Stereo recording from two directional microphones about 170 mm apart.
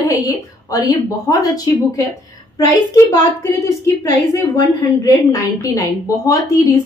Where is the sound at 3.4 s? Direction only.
15° left (ahead or behind).